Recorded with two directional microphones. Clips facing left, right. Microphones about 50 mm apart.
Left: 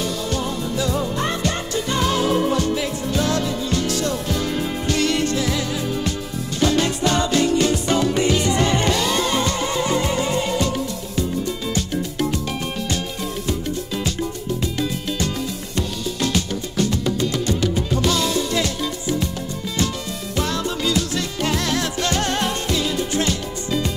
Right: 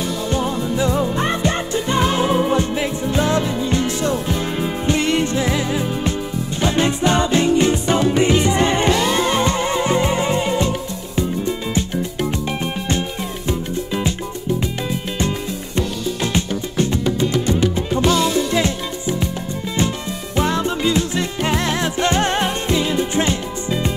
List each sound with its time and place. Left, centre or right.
0.3 s music: right
11.7 s music: right
20.3 s music: right